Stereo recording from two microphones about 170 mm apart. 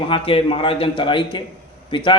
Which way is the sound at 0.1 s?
30° left (ahead or behind).